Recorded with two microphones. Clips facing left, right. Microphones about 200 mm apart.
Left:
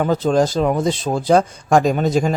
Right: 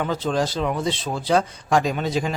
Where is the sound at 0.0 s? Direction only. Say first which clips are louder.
Left 7 dB; 45° left (ahead or behind).